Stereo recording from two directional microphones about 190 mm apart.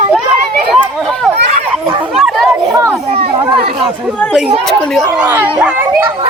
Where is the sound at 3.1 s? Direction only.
30° right (ahead or behind).